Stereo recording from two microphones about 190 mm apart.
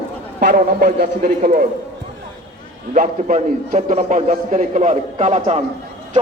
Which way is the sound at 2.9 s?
40° right (ahead or behind).